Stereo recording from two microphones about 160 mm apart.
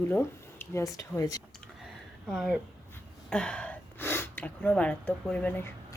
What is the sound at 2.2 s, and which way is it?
Speech, centre (ahead or behind).